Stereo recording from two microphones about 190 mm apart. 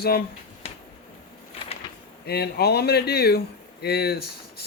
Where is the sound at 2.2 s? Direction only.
60° left (ahead or behind).